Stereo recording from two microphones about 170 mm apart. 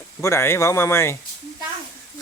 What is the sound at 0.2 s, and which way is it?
A man's voice, 15° left (ahead or behind).